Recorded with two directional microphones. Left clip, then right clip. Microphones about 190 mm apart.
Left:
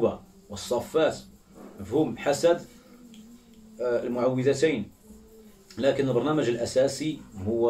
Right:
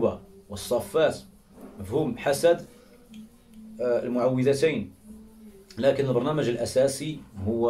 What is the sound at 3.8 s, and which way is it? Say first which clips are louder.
Speech: right 2 dB; 10° right (ahead or behind).